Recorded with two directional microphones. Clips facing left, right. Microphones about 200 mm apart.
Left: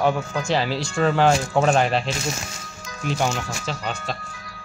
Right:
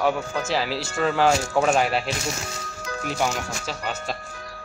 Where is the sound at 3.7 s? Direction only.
5° right (ahead or behind).